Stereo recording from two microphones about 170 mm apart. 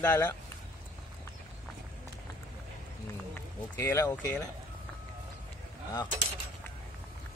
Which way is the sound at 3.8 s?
15° left (ahead or behind).